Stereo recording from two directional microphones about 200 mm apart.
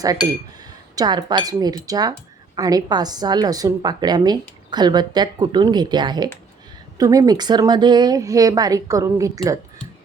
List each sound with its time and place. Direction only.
0.6 s a woman's voice: 20° right (ahead or behind)